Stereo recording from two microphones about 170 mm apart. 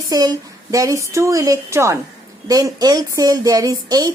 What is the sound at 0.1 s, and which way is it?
Speech, 20° right (ahead or behind).